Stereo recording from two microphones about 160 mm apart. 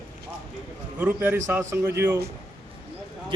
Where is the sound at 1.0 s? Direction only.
10° right (ahead or behind).